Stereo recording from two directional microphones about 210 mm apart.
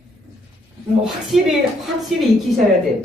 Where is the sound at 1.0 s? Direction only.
Centre (ahead or behind).